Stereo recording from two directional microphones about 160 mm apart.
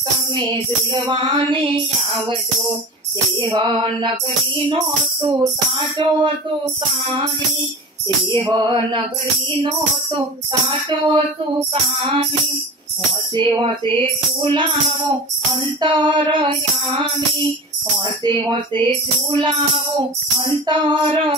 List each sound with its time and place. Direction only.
0.7 s music: 30° right (ahead or behind)
3.3 s music: 30° right (ahead or behind)
5.9 s music: 30° right (ahead or behind)
8.4 s music: 30° right (ahead or behind)
13.4 s music: 30° right (ahead or behind)
20.6 s music: 30° right (ahead or behind)